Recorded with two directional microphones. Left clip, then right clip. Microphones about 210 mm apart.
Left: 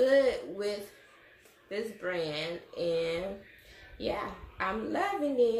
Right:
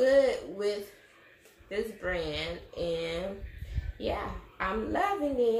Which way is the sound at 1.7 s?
10° left (ahead or behind).